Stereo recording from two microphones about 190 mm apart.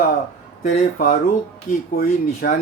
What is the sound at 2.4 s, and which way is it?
Speech, 50° left (ahead or behind).